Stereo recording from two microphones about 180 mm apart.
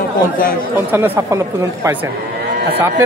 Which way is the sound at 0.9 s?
15° right (ahead or behind).